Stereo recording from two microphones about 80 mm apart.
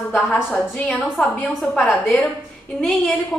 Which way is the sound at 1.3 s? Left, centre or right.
Left.